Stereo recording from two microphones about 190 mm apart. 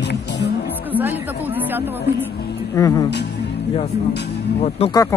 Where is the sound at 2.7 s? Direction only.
20° left (ahead or behind).